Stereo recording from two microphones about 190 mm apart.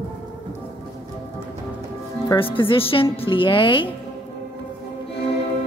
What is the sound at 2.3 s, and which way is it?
A woman's voice, 25° left (ahead or behind).